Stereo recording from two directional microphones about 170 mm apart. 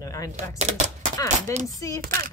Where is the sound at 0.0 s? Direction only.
20° left (ahead or behind).